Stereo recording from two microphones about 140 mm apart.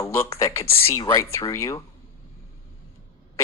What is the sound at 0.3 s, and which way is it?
Speech, 20° left (ahead or behind).